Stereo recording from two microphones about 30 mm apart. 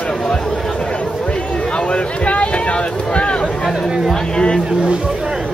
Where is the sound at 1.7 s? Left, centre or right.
Left.